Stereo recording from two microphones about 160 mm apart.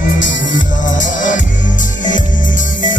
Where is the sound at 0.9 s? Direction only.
55° left (ahead or behind).